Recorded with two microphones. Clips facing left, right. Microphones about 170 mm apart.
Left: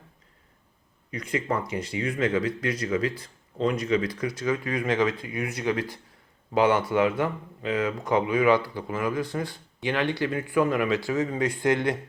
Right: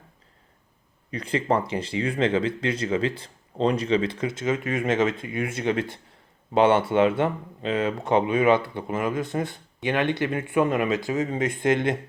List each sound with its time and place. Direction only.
1.1 s speech: 30° right (ahead or behind)